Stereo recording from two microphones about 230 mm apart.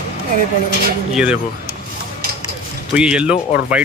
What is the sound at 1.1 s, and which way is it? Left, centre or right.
Speech, centre.